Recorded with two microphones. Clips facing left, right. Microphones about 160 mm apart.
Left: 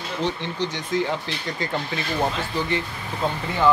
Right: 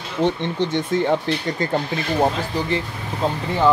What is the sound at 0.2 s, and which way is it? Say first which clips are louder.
Speech: right 6 dB; 55° right (ahead or behind).